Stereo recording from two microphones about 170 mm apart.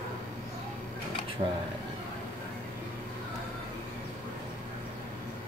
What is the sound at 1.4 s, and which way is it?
Speech, 35° right (ahead or behind).